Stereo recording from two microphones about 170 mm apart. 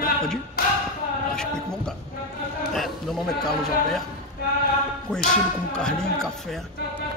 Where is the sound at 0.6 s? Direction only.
60° left (ahead or behind).